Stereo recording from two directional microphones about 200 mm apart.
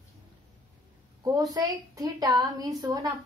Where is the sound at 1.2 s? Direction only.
20° right (ahead or behind).